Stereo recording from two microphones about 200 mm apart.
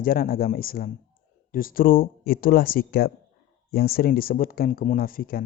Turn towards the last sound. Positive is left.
turn(degrees=45)  # may be behind; listen again after turning